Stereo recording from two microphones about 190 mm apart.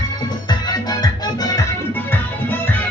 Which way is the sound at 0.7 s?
20° left (ahead or behind).